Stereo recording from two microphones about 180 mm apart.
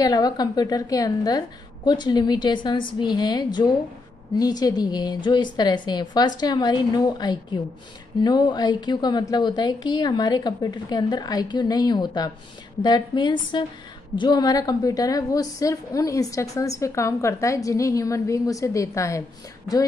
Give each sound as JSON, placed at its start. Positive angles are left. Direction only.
{"t": 0.0, "sound": "a woman's voice", "side_deg": 20}